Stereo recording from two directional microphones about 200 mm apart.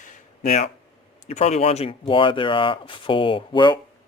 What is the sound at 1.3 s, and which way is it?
Speech, 30° left (ahead or behind).